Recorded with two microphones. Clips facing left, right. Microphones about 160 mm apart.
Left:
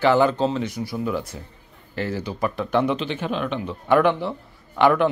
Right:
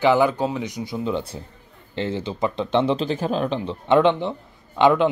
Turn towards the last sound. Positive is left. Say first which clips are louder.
# right 1 dB
turn(degrees=-20)  # may be behind; listen again after turning